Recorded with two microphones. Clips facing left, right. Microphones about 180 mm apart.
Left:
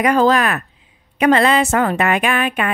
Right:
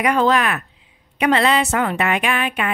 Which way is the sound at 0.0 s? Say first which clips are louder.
Left 3 dB; 40° left (ahead or behind).